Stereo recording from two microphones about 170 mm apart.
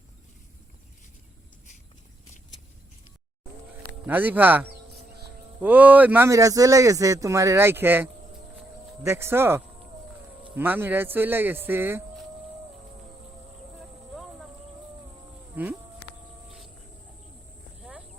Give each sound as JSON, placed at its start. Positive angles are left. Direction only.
{"t": 4.0, "sound": "speech", "side_deg": -10}
{"t": 5.6, "sound": "speech", "side_deg": -10}
{"t": 15.6, "sound": "livestock", "side_deg": -10}